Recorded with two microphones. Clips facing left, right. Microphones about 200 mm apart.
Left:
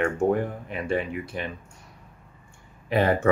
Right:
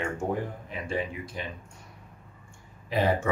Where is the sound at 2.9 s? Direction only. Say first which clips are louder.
Left 3 dB; 60° left (ahead or behind).